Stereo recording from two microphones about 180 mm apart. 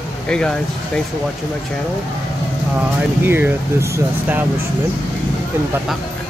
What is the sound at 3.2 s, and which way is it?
Speech, 10° right (ahead or behind).